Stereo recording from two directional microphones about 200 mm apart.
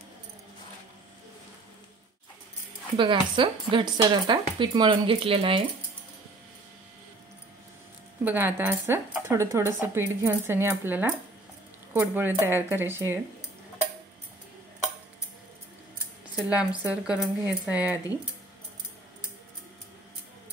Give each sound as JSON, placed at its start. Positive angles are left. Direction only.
{"t": 3.0, "sound": "speech", "side_deg": -25}
{"t": 8.2, "sound": "speech", "side_deg": -10}
{"t": 16.3, "sound": "speech", "side_deg": -5}